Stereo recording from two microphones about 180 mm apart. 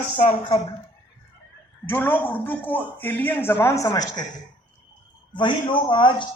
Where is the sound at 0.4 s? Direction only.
25° left (ahead or behind).